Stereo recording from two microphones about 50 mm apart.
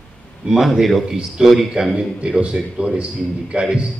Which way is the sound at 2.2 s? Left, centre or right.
Centre.